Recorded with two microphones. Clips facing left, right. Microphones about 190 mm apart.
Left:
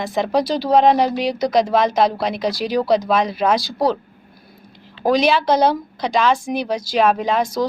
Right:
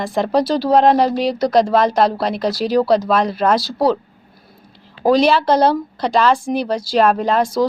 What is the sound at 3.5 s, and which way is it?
Speech, 5° right (ahead or behind).